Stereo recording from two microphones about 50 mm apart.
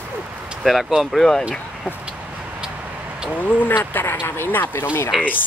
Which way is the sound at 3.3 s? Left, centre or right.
Left.